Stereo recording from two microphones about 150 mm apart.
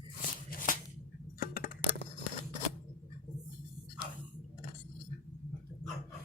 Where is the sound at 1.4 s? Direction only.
75° left (ahead or behind).